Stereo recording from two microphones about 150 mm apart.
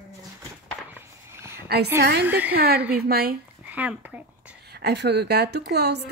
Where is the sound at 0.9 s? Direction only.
15° right (ahead or behind).